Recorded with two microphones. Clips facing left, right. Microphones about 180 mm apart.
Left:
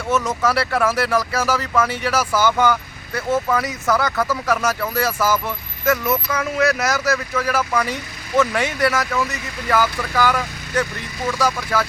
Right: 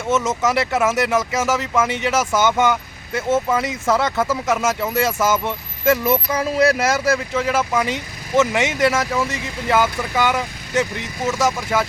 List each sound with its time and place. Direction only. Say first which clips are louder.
0.1 s speech: right 1 dB; 20° right (ahead or behind)